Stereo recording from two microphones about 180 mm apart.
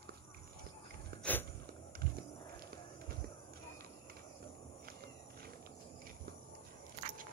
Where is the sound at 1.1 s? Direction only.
60° right (ahead or behind).